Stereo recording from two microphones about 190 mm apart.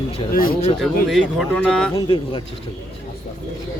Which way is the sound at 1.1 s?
Centre (ahead or behind).